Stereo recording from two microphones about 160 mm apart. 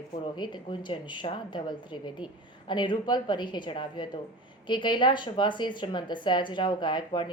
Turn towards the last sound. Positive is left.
turn(degrees=30)  # may be behind; listen again after turning